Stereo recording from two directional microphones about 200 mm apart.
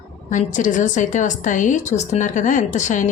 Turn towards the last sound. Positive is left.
turn(degrees=40)  # may be behind; listen again after turning